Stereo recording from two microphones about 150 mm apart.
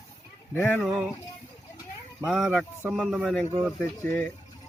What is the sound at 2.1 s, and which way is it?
Speech, centre (ahead or behind).